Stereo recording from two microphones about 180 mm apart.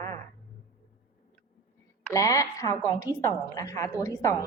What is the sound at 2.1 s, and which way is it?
A woman's voice, 20° left (ahead or behind).